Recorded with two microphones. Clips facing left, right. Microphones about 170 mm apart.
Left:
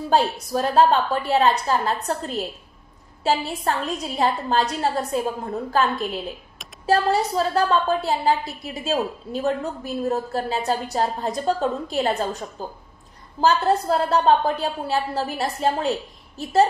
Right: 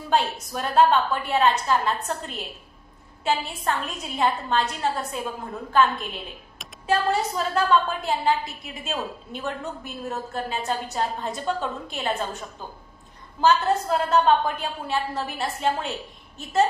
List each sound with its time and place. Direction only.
0.1 s a woman's voice: 35° left (ahead or behind)